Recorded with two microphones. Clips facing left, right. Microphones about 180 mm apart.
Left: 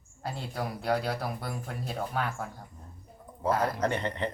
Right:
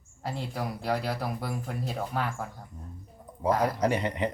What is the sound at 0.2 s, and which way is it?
Speech, centre (ahead or behind).